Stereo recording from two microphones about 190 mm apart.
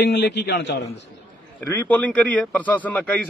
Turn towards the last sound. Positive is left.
turn(degrees=10)  # may be behind; listen again after turning